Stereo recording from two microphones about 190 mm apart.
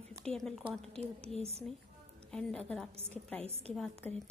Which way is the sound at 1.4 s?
30° right (ahead or behind).